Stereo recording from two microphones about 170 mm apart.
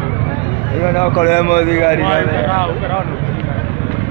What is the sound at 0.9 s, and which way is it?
Speech, 50° left (ahead or behind).